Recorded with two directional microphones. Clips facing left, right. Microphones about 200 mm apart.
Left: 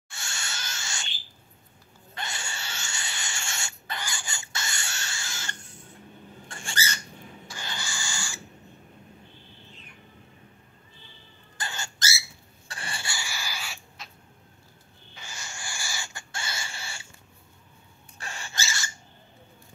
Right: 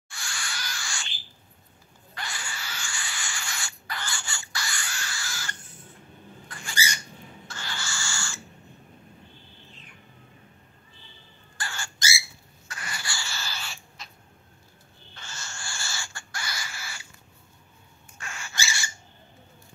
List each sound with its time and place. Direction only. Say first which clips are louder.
0.1 s a sound: right 1 dB; 25° left (ahead or behind)
2.1 s rodents: left 1 dB; 25° left (ahead or behind)
4.0 s pig: even; 15° left (ahead or behind)
6.7 s bird: right 1 dB; 10° right (ahead or behind)
7.4 s owl: even; 15° left (ahead or behind)
11.5 s bird: left 1 dB; 20° left (ahead or behind)
12.6 s a sound: left 1 dB; 30° left (ahead or behind); by 14.1 s 5° left (ahead or behind)
15.1 s owl: even; 15° left (ahead or behind)
18.1 s rodents: left 1 dB; 35° left (ahead or behind)
18.6 s owl: right 1 dB; 10° right (ahead or behind)